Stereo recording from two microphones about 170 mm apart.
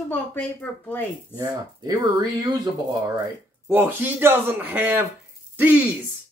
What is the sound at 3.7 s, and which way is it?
Speech, 10° right (ahead or behind).